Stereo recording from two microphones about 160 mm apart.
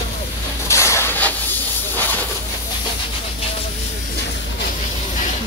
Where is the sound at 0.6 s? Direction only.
15° left (ahead or behind).